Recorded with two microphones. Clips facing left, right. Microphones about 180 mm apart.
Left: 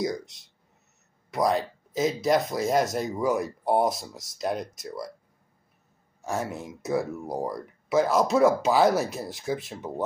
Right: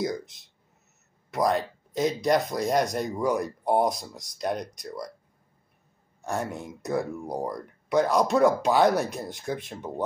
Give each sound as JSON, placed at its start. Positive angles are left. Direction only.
{"t": 0.0, "sound": "speech", "side_deg": 0}
{"t": 6.2, "sound": "speech", "side_deg": 0}